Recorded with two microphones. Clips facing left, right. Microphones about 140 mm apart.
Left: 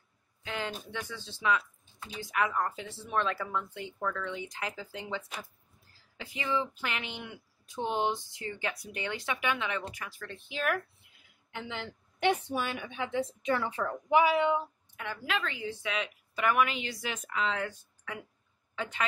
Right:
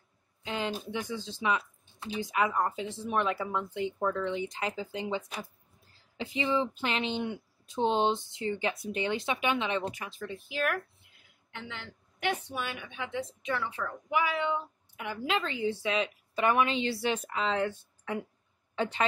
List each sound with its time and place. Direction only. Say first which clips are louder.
0.4 s a man's voice: right 3 dB; 20° right (ahead or behind)
10.2 s speech: right 1 dB; 5° right (ahead or behind)
11.5 s speech: left 4 dB; 15° left (ahead or behind)
12.5 s a woman's voice: left 3 dB; 40° left (ahead or behind)
14.1 s speech: left 5 dB; 20° left (ahead or behind)
15.0 s a woman's voice: right 3 dB; 20° right (ahead or behind)